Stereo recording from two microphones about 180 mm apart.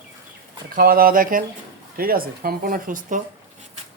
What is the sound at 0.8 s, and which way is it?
A man's voice, 55° right (ahead or behind).